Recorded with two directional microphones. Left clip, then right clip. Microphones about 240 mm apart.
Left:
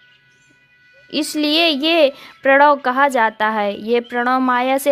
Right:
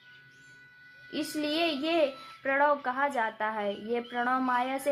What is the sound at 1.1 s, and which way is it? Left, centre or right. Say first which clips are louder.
A woman's voice: left 14 dB; left.